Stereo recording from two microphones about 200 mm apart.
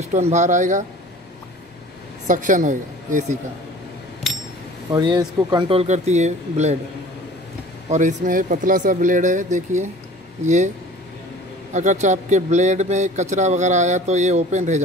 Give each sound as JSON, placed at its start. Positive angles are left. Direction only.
{"t": 0.0, "sound": "a man's voice", "side_deg": -35}
{"t": 2.2, "sound": "a man's voice", "side_deg": -40}
{"t": 4.9, "sound": "speech", "side_deg": -20}
{"t": 7.9, "sound": "a man's voice", "side_deg": -40}
{"t": 11.7, "sound": "a man's voice", "side_deg": -35}